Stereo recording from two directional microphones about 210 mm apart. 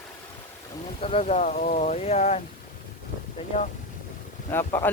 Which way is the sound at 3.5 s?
35° left (ahead or behind).